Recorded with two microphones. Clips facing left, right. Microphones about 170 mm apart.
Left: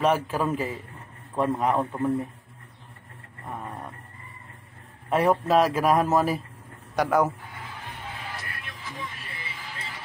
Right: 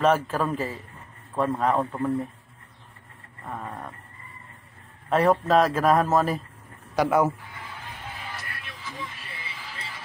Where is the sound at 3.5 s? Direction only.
15° left (ahead or behind).